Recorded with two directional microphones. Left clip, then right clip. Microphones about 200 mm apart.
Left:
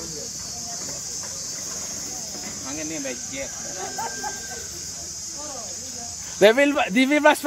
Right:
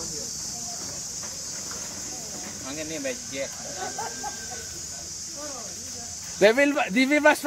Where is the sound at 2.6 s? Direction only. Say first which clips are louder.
Even; 40° right (ahead or behind).